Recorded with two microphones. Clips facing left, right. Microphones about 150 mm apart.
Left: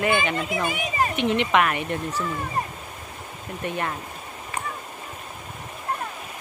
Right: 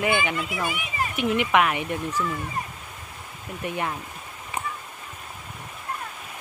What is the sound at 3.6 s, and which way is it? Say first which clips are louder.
Speech: even; 10° right (ahead or behind).